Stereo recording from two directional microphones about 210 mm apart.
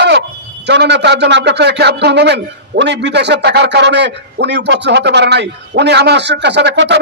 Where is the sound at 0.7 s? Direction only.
55° right (ahead or behind).